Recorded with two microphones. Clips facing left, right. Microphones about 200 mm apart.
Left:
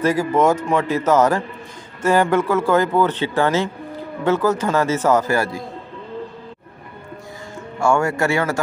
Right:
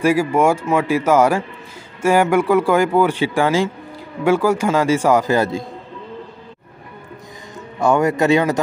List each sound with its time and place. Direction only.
0.0 s speech: 10° right (ahead or behind)
7.8 s speech: 20° right (ahead or behind)